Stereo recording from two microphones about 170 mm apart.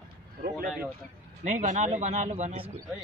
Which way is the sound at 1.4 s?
45° right (ahead or behind).